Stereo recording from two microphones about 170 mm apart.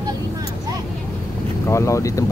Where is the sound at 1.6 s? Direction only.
15° left (ahead or behind).